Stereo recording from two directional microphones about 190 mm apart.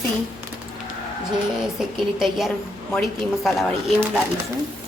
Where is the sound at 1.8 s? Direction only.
Centre (ahead or behind).